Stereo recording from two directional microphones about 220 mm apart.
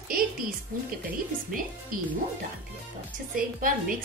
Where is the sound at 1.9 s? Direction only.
40° right (ahead or behind).